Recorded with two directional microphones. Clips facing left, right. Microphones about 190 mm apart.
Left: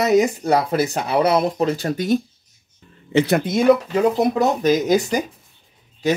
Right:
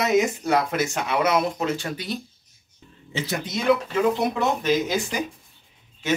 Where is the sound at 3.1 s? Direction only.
60° left (ahead or behind).